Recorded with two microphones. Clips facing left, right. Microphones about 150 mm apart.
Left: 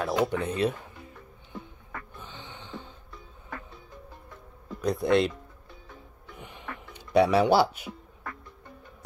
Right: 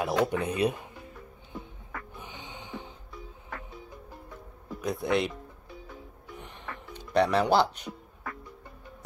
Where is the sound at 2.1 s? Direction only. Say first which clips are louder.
Right 1 dB; 15° right (ahead or behind).